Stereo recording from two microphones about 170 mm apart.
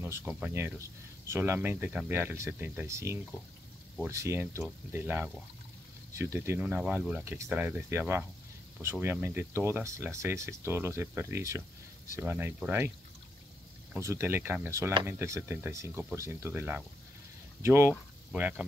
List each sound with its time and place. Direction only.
0.0 s speech: 10° right (ahead or behind)
13.9 s speech: 15° right (ahead or behind)